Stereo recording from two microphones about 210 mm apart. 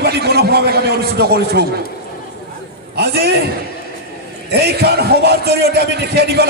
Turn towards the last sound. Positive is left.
turn(degrees=-50)  # may be behind; listen again after turning